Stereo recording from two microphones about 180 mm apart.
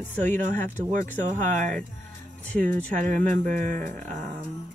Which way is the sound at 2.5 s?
5° left (ahead or behind).